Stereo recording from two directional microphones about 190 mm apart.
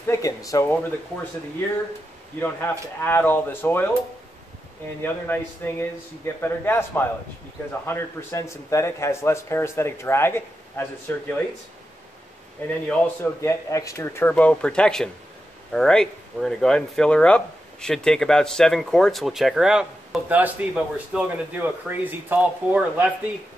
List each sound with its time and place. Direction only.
0.0 s a man's voice: 15° left (ahead or behind)
3.0 s a man's voice: 10° left (ahead or behind)
5.0 s a man's voice: 10° left (ahead or behind)
12.8 s a man's voice: 10° left (ahead or behind); by 23.0 s 5° right (ahead or behind)